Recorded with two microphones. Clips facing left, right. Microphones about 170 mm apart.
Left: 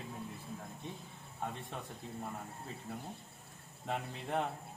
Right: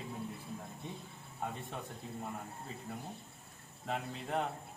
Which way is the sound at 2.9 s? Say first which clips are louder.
Even; 5° left (ahead or behind).